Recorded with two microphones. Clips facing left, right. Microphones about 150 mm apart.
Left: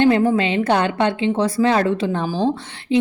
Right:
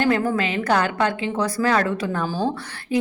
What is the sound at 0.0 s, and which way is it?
A woman's voice, 25° left (ahead or behind).